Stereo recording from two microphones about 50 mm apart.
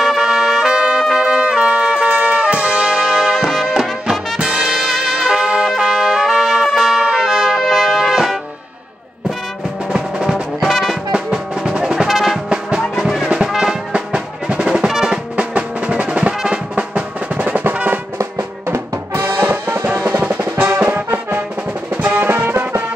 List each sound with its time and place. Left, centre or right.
0.0 s trumpet: centre
1.1 s music: centre
9.9 s music: centre
10.3 s music: centre
11.1 s music: centre
12.1 s music: centre
13.9 s music: centre
14.9 s music: centre
15.3 s music: right
16.9 s music: right
18.7 s music: right